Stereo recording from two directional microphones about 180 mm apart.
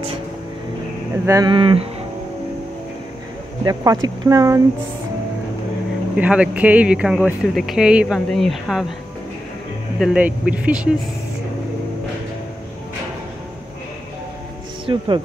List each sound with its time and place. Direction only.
1.2 s speech: 20° right (ahead or behind)
3.6 s speech: 20° right (ahead or behind)
6.1 s speech: 5° right (ahead or behind)
9.9 s speech: 5° right (ahead or behind)
14.9 s speech: 25° right (ahead or behind)